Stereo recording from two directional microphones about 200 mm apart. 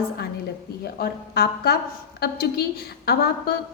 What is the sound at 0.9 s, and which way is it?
A woman's voice, 50° left (ahead or behind).